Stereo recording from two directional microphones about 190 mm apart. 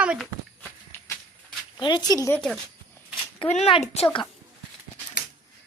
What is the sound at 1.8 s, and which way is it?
Speech, 25° left (ahead or behind).